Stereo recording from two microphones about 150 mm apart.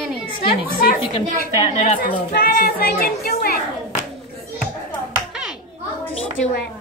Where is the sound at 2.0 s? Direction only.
75° left (ahead or behind).